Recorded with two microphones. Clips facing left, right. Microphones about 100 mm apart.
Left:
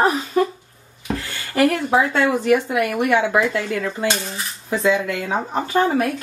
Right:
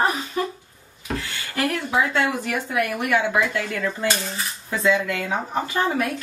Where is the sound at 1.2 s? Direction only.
40° left (ahead or behind).